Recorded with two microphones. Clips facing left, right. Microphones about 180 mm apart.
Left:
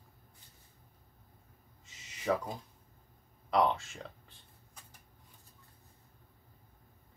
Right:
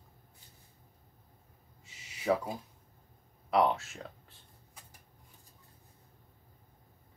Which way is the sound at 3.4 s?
5° right (ahead or behind).